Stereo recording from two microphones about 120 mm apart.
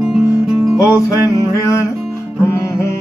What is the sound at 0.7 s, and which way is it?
Music, 25° left (ahead or behind).